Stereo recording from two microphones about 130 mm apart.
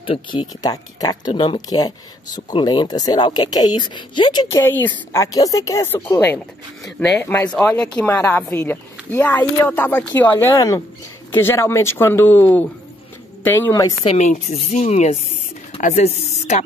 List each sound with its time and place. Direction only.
0.0 s speech: 40° left (ahead or behind); by 5.2 s 15° left (ahead or behind)
5.2 s a woman's voice: 25° left (ahead or behind)
14.0 s speech: 65° left (ahead or behind)